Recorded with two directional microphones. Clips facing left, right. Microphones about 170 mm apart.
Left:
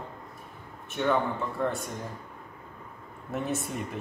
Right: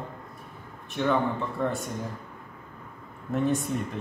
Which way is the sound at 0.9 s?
Centre (ahead or behind).